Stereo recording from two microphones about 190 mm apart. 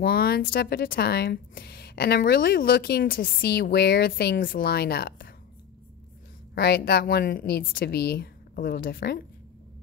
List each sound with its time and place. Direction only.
0.0 s speech: 55° left (ahead or behind)
6.5 s speech: 55° left (ahead or behind)